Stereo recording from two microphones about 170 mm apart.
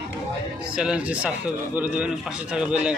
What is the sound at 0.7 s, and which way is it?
Speech, 5° right (ahead or behind).